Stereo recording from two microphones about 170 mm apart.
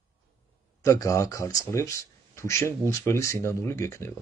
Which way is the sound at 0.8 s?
20° left (ahead or behind).